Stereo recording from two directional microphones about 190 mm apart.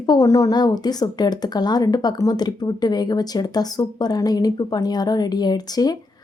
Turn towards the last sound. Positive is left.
turn(degrees=20)  # may be behind; listen again after turning